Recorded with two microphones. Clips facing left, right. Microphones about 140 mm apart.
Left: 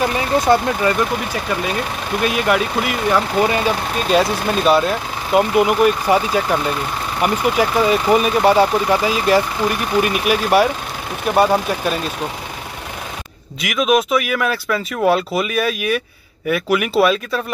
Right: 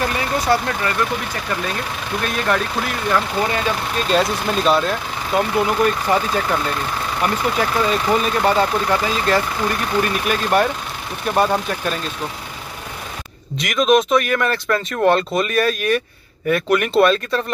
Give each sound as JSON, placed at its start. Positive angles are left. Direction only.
{"t": 2.2, "sound": "speech", "side_deg": 10}
{"t": 5.3, "sound": "speech", "side_deg": 15}
{"t": 13.6, "sound": "speech", "side_deg": 5}